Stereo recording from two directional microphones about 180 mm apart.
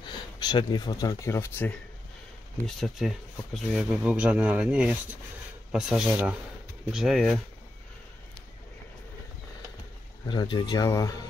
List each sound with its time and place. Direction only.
0.0 s speech: 25° left (ahead or behind)
2.6 s speech: centre (ahead or behind)
5.7 s rub: 5° right (ahead or behind)
10.2 s speech: 25° left (ahead or behind)